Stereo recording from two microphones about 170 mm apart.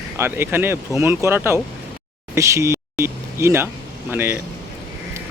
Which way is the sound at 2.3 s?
15° right (ahead or behind).